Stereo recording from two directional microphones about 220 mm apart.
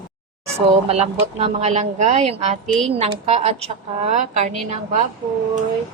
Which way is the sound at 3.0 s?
30° right (ahead or behind).